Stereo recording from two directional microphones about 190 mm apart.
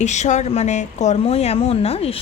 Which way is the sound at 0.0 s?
40° left (ahead or behind).